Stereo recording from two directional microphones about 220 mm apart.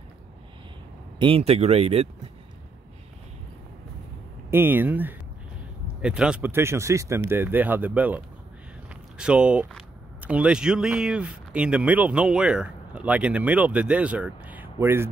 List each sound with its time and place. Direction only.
1.2 s speech: 25° right (ahead or behind)
4.5 s speech: 10° right (ahead or behind)
9.2 s speech: 5° right (ahead or behind)